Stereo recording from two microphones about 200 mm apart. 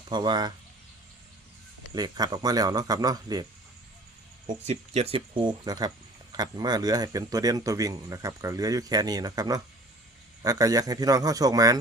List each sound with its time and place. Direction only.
0.1 s speech: 20° right (ahead or behind)
2.0 s speech: 20° right (ahead or behind)
4.4 s a man's voice: 35° right (ahead or behind); by 11.8 s 20° right (ahead or behind)